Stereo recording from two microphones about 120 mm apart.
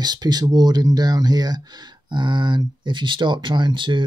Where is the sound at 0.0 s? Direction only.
35° right (ahead or behind).